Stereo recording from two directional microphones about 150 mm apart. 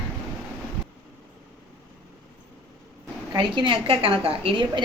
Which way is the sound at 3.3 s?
30° right (ahead or behind).